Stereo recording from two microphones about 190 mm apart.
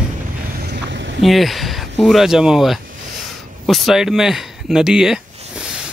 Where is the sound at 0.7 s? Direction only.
65° right (ahead or behind).